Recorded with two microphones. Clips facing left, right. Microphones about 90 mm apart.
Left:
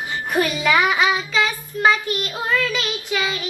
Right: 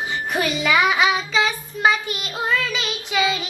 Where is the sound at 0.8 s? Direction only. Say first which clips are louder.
Right 2 dB; 20° right (ahead or behind).